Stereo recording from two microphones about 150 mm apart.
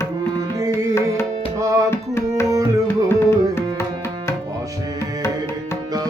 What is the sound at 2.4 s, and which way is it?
Tabla, 25° right (ahead or behind).